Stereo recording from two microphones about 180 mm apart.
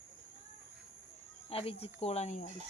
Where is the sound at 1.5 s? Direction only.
35° left (ahead or behind).